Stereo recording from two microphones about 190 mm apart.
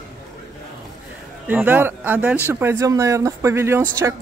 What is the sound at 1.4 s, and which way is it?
A woman's voice, 10° right (ahead or behind).